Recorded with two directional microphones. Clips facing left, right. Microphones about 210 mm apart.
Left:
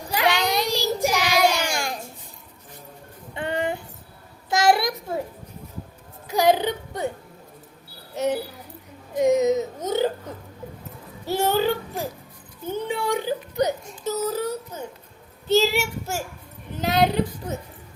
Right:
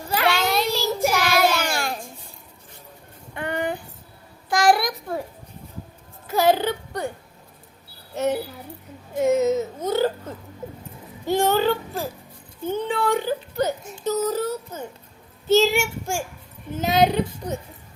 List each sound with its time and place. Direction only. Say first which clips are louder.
0.2 s child singing: even; 15° left (ahead or behind)
3.3 s a sound: even; 25° left (ahead or behind)
6.2 s whimper: even; 15° left (ahead or behind)
9.2 s whimper: even; 15° left (ahead or behind)
11.3 s a sound: right 2 dB; 10° left (ahead or behind)
12.6 s whimper: right 3 dB; 10° left (ahead or behind)
15.4 s child singing: right 2 dB; centre (ahead or behind)